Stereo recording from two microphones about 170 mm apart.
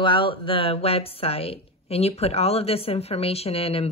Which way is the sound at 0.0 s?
30° left (ahead or behind).